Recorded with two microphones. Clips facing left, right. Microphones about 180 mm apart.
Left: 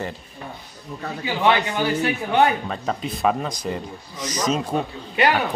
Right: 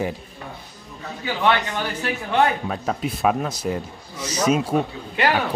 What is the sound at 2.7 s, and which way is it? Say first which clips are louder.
Speech: right 1 dB; 5° right (ahead or behind).